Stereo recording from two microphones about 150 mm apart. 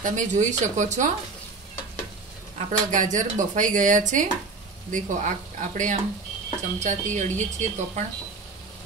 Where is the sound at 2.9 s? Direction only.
60° right (ahead or behind).